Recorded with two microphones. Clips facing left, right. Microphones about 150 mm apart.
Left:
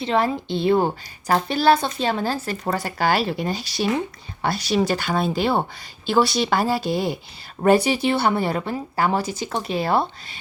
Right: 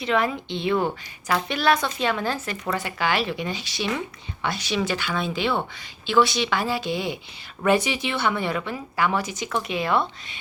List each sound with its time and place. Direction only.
0.0 s a woman's voice: 35° left (ahead or behind)